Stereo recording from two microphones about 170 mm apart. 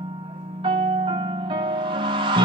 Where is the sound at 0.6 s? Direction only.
30° right (ahead or behind).